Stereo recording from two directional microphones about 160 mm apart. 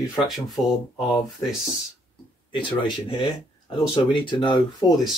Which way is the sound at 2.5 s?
30° left (ahead or behind).